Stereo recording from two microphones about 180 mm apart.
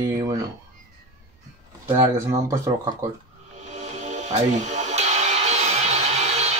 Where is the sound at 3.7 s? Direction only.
40° right (ahead or behind).